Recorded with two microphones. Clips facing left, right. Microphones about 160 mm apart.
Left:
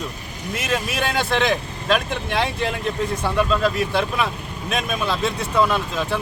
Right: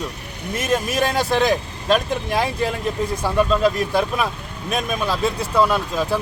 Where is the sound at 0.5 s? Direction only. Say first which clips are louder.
Right 4 dB; 45° right (ahead or behind).